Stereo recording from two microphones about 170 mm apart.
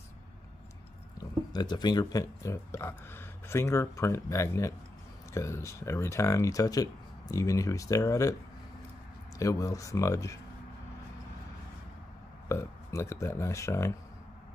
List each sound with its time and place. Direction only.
1.5 s speech: 25° left (ahead or behind)
9.4 s speech: 20° left (ahead or behind)
12.4 s speech: 15° left (ahead or behind)